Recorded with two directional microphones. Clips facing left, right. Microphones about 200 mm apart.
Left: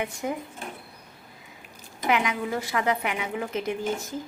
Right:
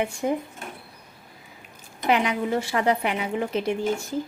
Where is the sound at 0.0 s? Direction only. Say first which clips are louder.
Right 5 dB; 30° right (ahead or behind).